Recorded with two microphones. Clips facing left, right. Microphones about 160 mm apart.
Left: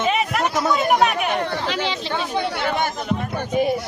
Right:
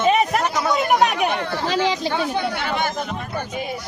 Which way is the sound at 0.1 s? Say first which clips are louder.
Right 3 dB; 40° right (ahead or behind).